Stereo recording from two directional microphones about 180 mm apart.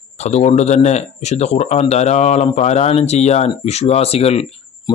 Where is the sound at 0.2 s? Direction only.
40° left (ahead or behind).